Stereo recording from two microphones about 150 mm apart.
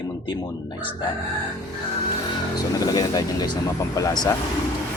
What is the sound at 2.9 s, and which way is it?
Speech, 25° left (ahead or behind).